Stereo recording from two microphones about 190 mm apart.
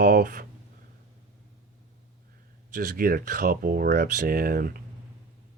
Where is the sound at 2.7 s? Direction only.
50° right (ahead or behind).